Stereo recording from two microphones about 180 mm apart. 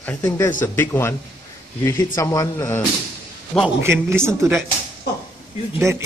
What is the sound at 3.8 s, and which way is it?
Speech, 15° right (ahead or behind).